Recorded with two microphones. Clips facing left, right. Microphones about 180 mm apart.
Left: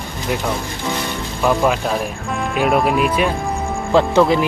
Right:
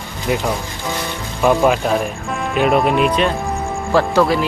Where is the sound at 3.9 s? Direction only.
20° left (ahead or behind).